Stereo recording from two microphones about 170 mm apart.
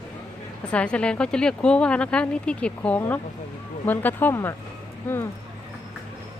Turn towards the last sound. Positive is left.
turn(degrees=15)  # may be behind; listen again after turning